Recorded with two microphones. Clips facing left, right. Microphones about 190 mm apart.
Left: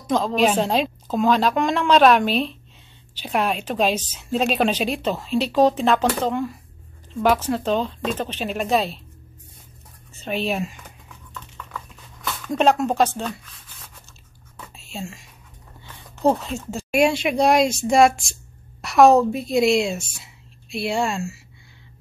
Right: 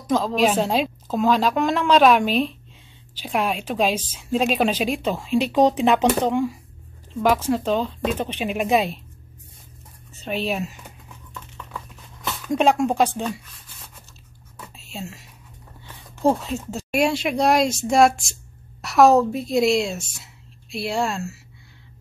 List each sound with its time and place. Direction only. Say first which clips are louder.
0.0 s a woman's voice: even; 5° right (ahead or behind)
10.2 s a woman's voice: left 1 dB; centre (ahead or behind)
12.5 s a woman's voice: even; 10° right (ahead or behind)
14.9 s speech: left 1 dB; 5° right (ahead or behind)
16.3 s a woman's voice: even; 5° right (ahead or behind)